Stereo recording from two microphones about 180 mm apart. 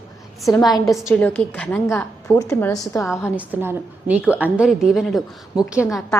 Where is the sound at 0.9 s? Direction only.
Centre (ahead or behind); by 3.1 s 15° left (ahead or behind).